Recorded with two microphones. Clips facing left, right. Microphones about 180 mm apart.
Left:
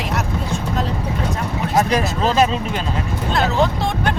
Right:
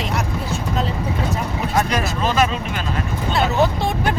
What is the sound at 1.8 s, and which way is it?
Speech, 35° left (ahead or behind).